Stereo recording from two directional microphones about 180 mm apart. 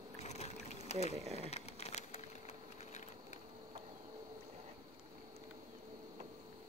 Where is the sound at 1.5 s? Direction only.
35° left (ahead or behind).